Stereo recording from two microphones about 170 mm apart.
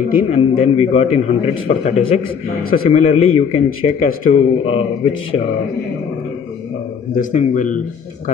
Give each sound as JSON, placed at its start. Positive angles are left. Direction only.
{"t": 0.3, "sound": "a man's voice", "side_deg": 40}
{"t": 2.6, "sound": "a man's voice", "side_deg": 60}
{"t": 3.0, "sound": "a man's voice", "side_deg": 35}
{"t": 7.2, "sound": "speech", "side_deg": 50}